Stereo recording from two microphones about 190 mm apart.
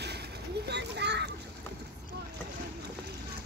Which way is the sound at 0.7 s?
65° right (ahead or behind).